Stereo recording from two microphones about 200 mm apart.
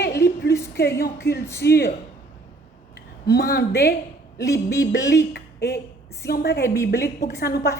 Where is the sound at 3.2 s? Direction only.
50° left (ahead or behind).